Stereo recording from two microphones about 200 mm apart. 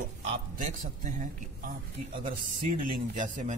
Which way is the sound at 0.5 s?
40° right (ahead or behind).